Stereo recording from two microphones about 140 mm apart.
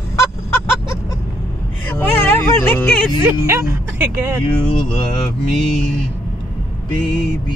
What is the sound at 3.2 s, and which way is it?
Speech, 20° right (ahead or behind).